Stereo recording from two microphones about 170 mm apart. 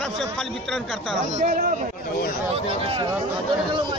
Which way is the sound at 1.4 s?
45° right (ahead or behind).